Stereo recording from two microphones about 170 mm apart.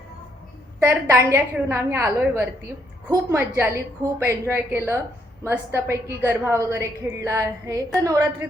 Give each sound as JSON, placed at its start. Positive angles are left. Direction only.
{"t": 0.8, "sound": "a woman's voice", "side_deg": -15}